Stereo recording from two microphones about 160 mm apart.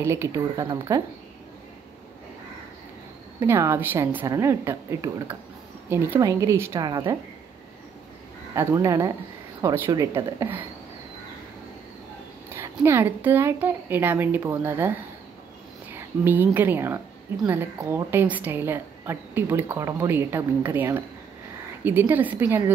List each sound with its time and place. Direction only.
0.0 s speech: 15° right (ahead or behind)
3.3 s a woman's voice: 15° right (ahead or behind)
8.5 s a woman's voice: 20° right (ahead or behind)
12.5 s a woman's voice: 15° right (ahead or behind)